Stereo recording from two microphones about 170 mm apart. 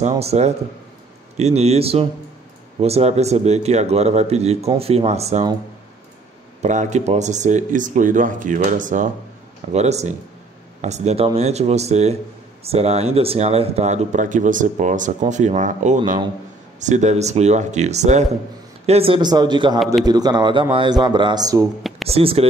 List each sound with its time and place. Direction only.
0.2 s speech: 40° right (ahead or behind)
6.6 s a man's voice: 45° right (ahead or behind); by 21.6 s 20° right (ahead or behind)
21.8 s a sound: centre (ahead or behind)
22.1 s speech: 35° right (ahead or behind)